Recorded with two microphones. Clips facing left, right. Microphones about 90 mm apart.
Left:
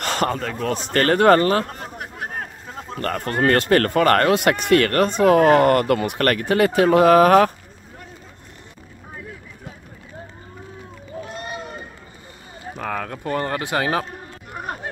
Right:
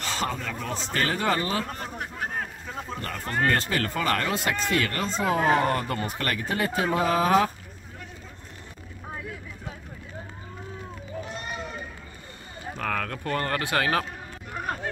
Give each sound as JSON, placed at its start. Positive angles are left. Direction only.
{"t": 0.0, "sound": "speech", "side_deg": 60}
{"t": 3.0, "sound": "speech", "side_deg": 60}
{"t": 11.2, "sound": "run", "side_deg": 0}
{"t": 12.7, "sound": "speech", "side_deg": 15}